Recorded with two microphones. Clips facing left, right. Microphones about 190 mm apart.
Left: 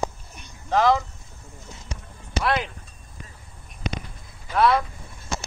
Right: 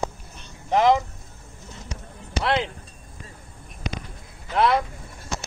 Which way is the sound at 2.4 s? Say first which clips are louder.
Right 1 dB; 25° right (ahead or behind).